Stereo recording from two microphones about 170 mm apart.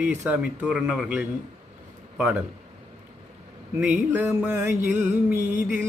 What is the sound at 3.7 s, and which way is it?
A man's voice, 10° right (ahead or behind).